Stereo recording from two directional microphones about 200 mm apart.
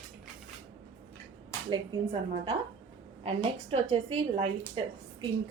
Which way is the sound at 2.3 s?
25° right (ahead or behind).